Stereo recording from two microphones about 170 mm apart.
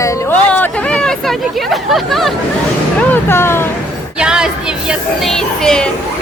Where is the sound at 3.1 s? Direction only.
15° left (ahead or behind).